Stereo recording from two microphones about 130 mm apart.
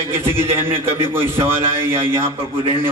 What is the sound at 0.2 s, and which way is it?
A man's voice, 20° right (ahead or behind).